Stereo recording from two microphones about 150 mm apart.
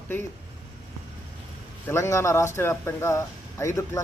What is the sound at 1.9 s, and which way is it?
Speech, 20° left (ahead or behind).